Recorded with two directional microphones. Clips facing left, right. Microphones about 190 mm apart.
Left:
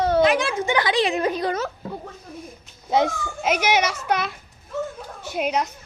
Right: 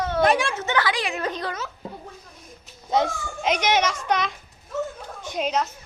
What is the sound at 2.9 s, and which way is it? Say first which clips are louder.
A child's voice: left 2 dB; 10° left (ahead or behind).